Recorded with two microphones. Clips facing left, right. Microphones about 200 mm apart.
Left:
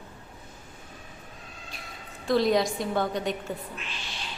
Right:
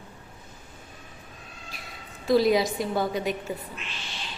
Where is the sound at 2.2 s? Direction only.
5° right (ahead or behind).